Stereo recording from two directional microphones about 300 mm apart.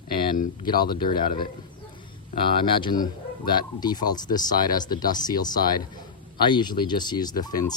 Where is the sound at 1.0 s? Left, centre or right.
Left.